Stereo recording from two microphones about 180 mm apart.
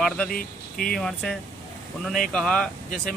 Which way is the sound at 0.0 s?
5° left (ahead or behind).